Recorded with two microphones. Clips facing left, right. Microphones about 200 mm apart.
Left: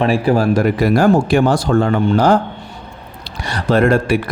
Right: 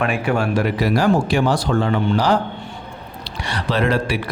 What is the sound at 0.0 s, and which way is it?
A man's voice, 35° left (ahead or behind).